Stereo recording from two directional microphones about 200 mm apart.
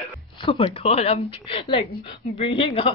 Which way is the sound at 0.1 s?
25° left (ahead or behind).